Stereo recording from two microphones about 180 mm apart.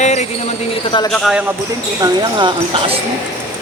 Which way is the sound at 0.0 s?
40° left (ahead or behind).